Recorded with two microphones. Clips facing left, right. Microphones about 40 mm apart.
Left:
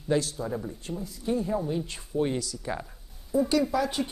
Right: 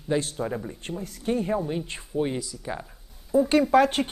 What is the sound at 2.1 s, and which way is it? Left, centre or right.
Speech, centre.